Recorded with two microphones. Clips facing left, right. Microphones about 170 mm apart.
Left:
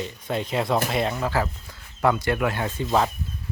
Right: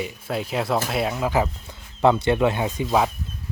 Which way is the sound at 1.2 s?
15° right (ahead or behind).